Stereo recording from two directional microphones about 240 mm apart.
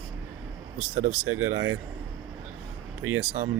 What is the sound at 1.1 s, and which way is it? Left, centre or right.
Speech, right.